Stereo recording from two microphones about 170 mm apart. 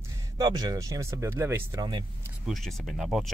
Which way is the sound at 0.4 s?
25° right (ahead or behind).